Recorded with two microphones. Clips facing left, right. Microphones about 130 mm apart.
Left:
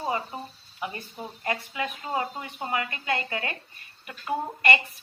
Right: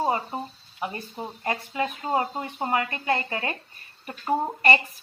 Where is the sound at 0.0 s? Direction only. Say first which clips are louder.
Right 4 dB; 30° right (ahead or behind).